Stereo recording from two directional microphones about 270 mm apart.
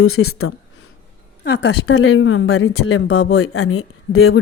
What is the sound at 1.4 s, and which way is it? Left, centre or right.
Speech, left.